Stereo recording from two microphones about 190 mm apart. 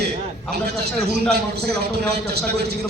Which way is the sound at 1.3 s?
55° right (ahead or behind).